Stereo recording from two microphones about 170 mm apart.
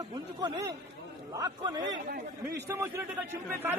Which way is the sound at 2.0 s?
60° right (ahead or behind).